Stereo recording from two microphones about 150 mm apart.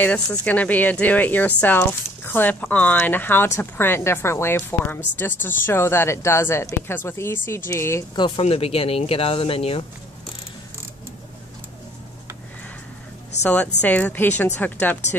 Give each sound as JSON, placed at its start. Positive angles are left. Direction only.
{"t": 0.0, "sound": "speech", "side_deg": 10}
{"t": 8.2, "sound": "speech", "side_deg": 40}
{"t": 13.4, "sound": "speech", "side_deg": 10}